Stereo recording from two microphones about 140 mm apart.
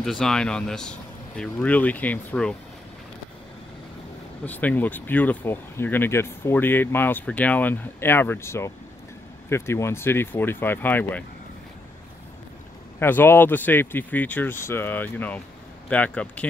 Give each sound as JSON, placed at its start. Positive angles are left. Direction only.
{"t": 0.0, "sound": "speech", "side_deg": 5}
{"t": 4.5, "sound": "speech", "side_deg": 10}
{"t": 13.0, "sound": "speech", "side_deg": 15}